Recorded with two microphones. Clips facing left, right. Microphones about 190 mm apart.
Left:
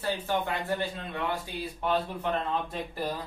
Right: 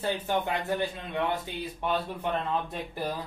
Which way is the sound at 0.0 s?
15° right (ahead or behind).